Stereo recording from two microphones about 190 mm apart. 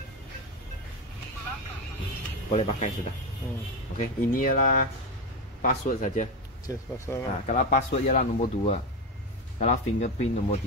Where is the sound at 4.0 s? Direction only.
45° left (ahead or behind).